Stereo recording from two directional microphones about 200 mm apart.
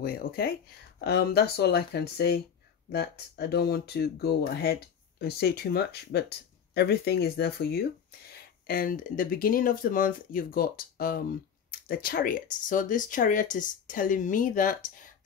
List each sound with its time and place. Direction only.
0.0 s speech: 50° left (ahead or behind)